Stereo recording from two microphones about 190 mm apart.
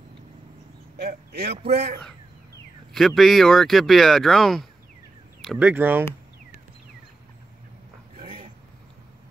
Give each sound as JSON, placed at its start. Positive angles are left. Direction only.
{"t": 0.9, "sound": "speech", "side_deg": -60}
{"t": 2.9, "sound": "speech", "side_deg": 0}